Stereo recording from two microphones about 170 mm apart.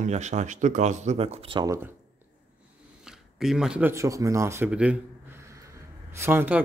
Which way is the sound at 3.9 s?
20° right (ahead or behind).